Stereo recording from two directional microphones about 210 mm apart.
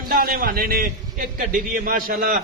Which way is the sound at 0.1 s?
45° right (ahead or behind).